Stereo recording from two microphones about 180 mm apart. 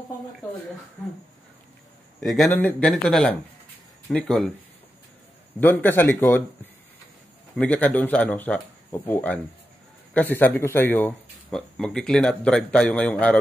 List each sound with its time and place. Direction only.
2.1 s speech: centre (ahead or behind)
5.6 s speech: 10° left (ahead or behind)